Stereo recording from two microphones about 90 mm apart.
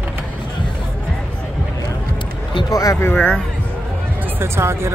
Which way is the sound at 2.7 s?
40° left (ahead or behind).